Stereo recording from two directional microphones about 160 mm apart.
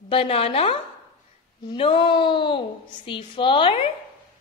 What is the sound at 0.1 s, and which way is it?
Speech, 35° left (ahead or behind).